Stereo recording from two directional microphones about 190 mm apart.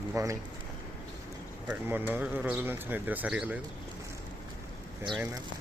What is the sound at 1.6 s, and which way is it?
Speech, 10° right (ahead or behind).